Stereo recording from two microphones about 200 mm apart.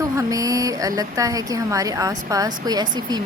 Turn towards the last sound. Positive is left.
turn(degrees=-20)  # may be behind; listen again after turning